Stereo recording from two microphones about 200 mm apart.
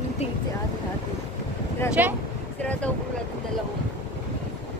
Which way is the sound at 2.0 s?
10° right (ahead or behind).